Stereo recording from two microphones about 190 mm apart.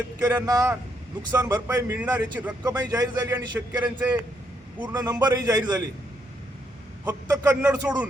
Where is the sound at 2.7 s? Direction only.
20° right (ahead or behind).